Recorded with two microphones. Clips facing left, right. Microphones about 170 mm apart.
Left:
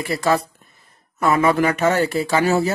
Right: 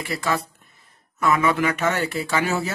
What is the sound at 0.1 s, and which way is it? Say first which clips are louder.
Speech: left 6 dB; 40° left (ahead or behind).